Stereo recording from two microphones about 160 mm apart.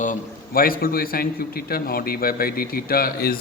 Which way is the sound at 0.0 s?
60° left (ahead or behind).